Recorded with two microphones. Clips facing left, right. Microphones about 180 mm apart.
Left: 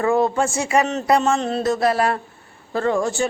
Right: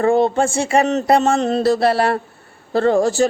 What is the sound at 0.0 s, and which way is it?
Speech, 30° right (ahead or behind).